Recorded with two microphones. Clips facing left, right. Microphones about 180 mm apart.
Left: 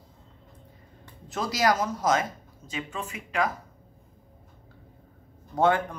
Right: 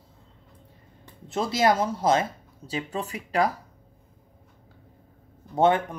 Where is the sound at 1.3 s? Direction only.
25° right (ahead or behind).